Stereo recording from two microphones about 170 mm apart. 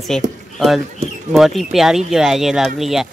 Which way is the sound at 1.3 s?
Centre (ahead or behind).